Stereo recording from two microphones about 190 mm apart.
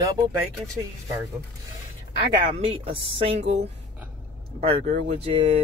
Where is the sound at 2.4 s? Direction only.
30° right (ahead or behind).